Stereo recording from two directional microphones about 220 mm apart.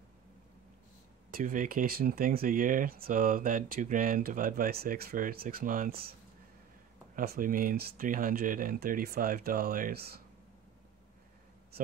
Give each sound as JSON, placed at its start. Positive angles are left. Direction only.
{"t": 1.3, "sound": "speech", "side_deg": -35}
{"t": 7.2, "sound": "speech", "side_deg": -40}